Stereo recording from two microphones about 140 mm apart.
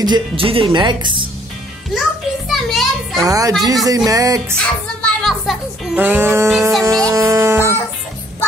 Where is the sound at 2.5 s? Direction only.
Centre (ahead or behind).